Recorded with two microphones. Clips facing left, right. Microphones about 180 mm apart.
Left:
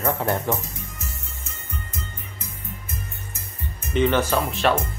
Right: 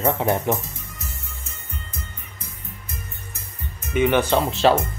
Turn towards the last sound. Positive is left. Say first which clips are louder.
# right 4 dB
turn(degrees=-25)  # may be behind; listen again after turning